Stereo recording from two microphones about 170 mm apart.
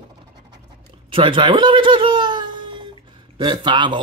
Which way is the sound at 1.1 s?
30° right (ahead or behind).